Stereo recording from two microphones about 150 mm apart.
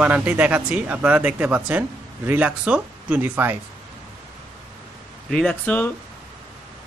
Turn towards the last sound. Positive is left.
turn(degrees=10)  # may be behind; listen again after turning